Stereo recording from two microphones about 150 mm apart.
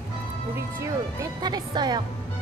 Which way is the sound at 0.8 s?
25° right (ahead or behind).